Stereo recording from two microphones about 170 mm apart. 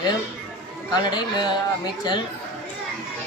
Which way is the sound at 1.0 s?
25° left (ahead or behind).